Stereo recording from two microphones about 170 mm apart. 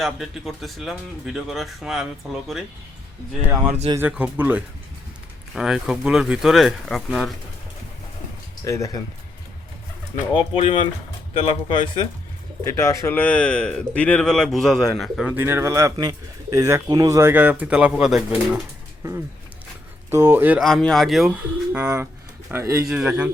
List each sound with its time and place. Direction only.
0.0 s speech: centre (ahead or behind)
3.7 s speech: 40° right (ahead or behind)
3.9 s a man's voice: 10° right (ahead or behind)
8.6 s speech: 20° left (ahead or behind)
10.3 s speech: 30° left (ahead or behind)
12.6 s speech: 15° left (ahead or behind); by 15.3 s centre (ahead or behind)
15.3 s a man's voice: 15° right (ahead or behind)
20.1 s a man's voice: 15° right (ahead or behind)
20.6 s a man's voice: centre (ahead or behind); by 22.8 s 15° right (ahead or behind)
22.9 s a man's voice: 5° right (ahead or behind)